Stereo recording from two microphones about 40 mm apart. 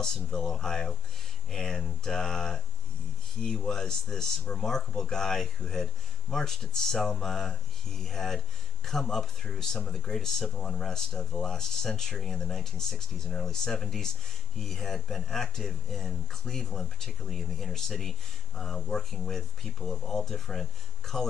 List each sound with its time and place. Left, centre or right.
0.0 s speech: centre